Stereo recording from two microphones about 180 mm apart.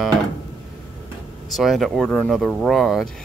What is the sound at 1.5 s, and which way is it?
Speech, centre (ahead or behind).